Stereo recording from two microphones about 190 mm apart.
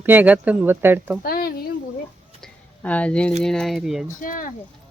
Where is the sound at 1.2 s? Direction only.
50° left (ahead or behind).